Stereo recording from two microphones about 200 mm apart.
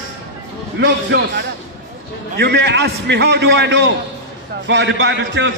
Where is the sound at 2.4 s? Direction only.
55° right (ahead or behind).